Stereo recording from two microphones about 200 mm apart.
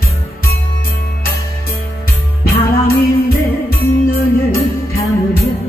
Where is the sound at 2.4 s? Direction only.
50° left (ahead or behind).